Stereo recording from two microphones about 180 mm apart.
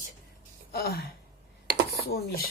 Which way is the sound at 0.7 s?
60° left (ahead or behind).